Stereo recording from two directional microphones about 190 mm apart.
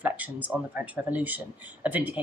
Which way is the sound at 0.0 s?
10° right (ahead or behind).